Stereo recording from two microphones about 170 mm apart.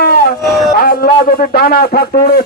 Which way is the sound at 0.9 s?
60° left (ahead or behind).